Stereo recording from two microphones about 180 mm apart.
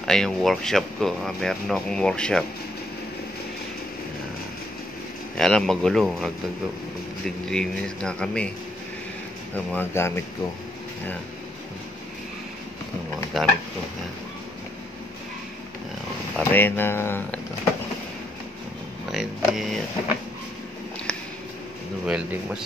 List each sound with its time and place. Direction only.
0.0 s speech: 5° left (ahead or behind)
5.4 s speech: 5° left (ahead or behind)
7.4 s speech: 5° left (ahead or behind)
9.7 s speech: 10° left (ahead or behind)
13.4 s speech: centre (ahead or behind)
16.3 s speech: 10° left (ahead or behind)
19.0 s speech: centre (ahead or behind)
22.0 s speech: 5° right (ahead or behind)